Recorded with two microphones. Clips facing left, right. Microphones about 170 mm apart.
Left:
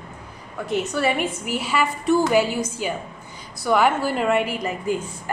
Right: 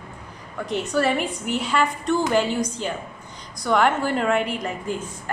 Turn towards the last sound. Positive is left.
turn(degrees=5)  # may be behind; listen again after turning